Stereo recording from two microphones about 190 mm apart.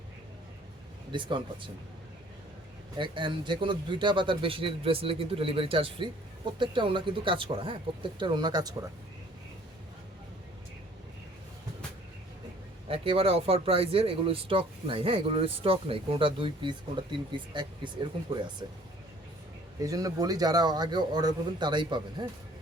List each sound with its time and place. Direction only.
1.1 s a man's voice: 25° right (ahead or behind)
3.0 s a man's voice: 25° right (ahead or behind)
12.9 s a man's voice: 30° right (ahead or behind)
19.8 s a man's voice: 20° right (ahead or behind)